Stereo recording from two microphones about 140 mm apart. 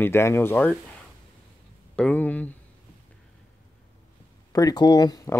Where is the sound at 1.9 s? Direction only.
10° left (ahead or behind).